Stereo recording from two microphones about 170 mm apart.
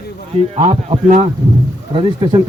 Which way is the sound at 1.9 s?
30° right (ahead or behind).